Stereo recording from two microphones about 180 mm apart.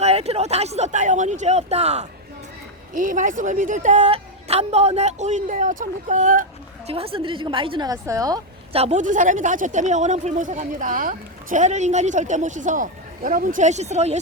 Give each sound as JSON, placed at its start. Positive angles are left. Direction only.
{"t": 0.0, "sound": "speech", "side_deg": -35}
{"t": 6.9, "sound": "a woman's voice", "side_deg": -30}
{"t": 8.7, "sound": "speech", "side_deg": -35}